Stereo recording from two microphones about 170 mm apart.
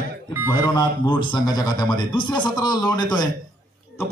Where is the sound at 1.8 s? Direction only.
25° left (ahead or behind).